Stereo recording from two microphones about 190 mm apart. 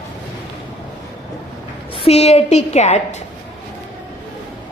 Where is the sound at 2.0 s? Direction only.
35° left (ahead or behind).